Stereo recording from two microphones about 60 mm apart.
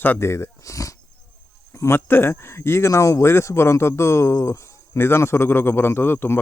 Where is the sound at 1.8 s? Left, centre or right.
Left.